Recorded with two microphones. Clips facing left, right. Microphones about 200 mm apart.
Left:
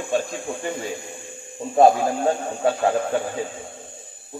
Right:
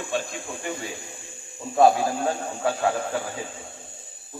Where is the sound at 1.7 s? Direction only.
30° left (ahead or behind).